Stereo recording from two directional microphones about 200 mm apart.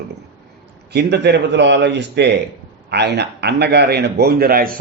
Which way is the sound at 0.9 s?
55° right (ahead or behind).